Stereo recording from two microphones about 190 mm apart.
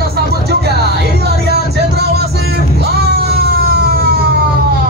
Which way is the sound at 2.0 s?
60° right (ahead or behind).